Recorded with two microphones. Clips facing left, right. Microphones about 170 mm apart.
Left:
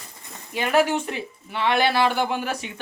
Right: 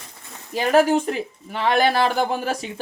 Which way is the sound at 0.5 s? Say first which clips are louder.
Right 4 dB; 40° right (ahead or behind).